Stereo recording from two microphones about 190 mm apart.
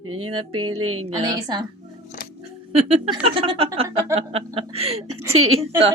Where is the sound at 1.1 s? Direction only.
25° right (ahead or behind).